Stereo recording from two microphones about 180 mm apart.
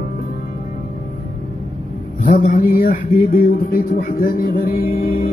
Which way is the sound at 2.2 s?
50° left (ahead or behind).